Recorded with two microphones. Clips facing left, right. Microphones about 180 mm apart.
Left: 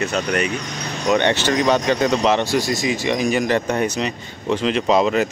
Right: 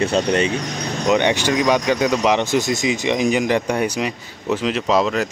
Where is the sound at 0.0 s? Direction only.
30° right (ahead or behind).